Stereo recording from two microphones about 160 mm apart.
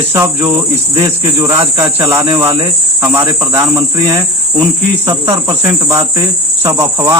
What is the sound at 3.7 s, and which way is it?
Cricket, 35° right (ahead or behind).